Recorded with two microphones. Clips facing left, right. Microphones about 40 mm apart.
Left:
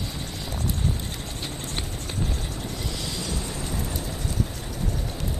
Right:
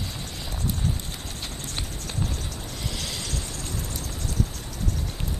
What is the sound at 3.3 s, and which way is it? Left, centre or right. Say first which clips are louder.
Vehicle: left 3 dB; centre.